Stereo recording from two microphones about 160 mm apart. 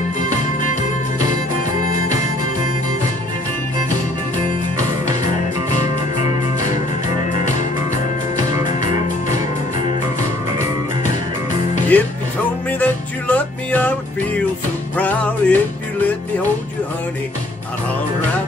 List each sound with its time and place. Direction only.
1.8 s music: 55° left (ahead or behind)
11.9 s music: 10° left (ahead or behind)
15.4 s music: 10° left (ahead or behind)